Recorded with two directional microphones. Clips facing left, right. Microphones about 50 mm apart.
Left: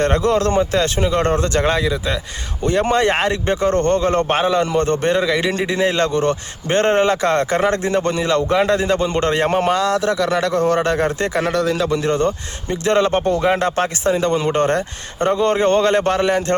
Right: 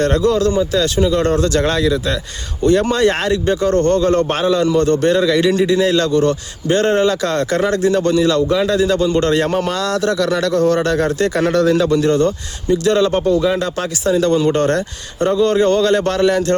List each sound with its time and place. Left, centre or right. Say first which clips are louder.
0.2 s a man's voice: right 1 dB; left
9.7 s speech: even; centre
11.5 s a man's voice: right 4 dB; centre
11.9 s a man's voice: right 4 dB; centre
12.7 s a man's voice: right 2 dB; left
15.2 s a man's voice: right 2 dB; left